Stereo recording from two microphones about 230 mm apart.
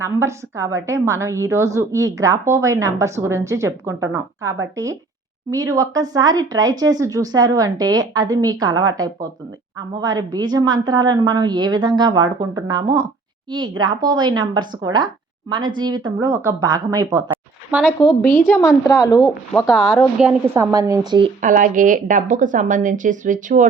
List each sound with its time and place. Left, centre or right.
0.0 s a woman's voice: centre
10.0 s a woman's voice: centre
18.0 s a woman's voice: centre
19.5 s a woman's voice: centre
21.4 s a woman's voice: right